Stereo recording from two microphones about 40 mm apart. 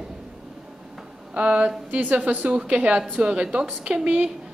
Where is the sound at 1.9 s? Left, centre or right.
Right.